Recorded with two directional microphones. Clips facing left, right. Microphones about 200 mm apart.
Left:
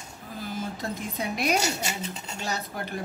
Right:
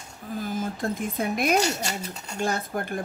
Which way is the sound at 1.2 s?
50° right (ahead or behind).